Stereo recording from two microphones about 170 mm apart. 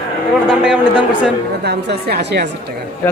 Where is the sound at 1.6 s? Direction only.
75° right (ahead or behind).